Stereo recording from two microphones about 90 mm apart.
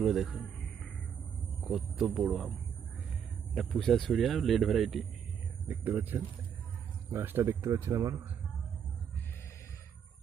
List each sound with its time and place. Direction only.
0.0 s speech: centre (ahead or behind)
2.0 s speech: 10° right (ahead or behind)
3.5 s speech: centre (ahead or behind)
5.6 s speech: 20° right (ahead or behind); by 8.1 s 35° right (ahead or behind)